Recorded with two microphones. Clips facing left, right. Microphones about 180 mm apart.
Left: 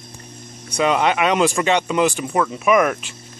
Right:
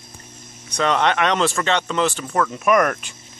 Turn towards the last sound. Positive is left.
turn(degrees=5)  # may be behind; listen again after turning